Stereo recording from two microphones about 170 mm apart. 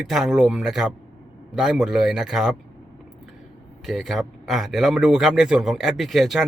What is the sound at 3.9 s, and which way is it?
Speech, centre (ahead or behind).